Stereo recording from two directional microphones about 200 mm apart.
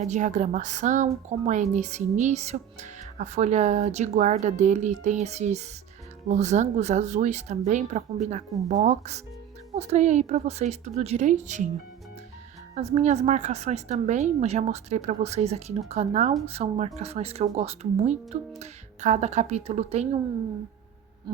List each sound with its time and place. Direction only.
0.0 s a woman's voice: 35° right (ahead or behind)
12.7 s a woman's voice: 35° right (ahead or behind)